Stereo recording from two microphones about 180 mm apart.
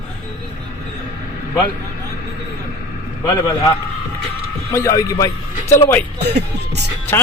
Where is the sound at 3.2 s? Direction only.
20° left (ahead or behind).